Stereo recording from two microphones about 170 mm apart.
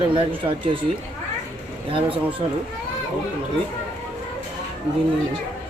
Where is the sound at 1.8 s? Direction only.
30° right (ahead or behind).